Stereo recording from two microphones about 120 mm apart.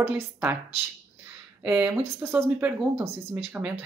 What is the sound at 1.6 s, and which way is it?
Speech, 15° right (ahead or behind).